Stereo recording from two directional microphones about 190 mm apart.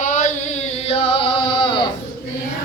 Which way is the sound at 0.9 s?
25° left (ahead or behind).